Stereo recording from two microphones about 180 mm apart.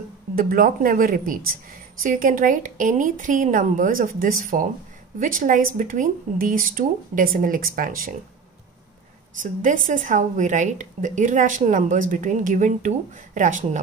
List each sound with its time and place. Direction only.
0.4 s a woman's voice: 50° right (ahead or behind)
9.4 s a woman's voice: 45° right (ahead or behind)